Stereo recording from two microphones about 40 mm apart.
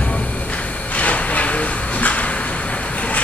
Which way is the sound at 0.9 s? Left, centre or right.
Left.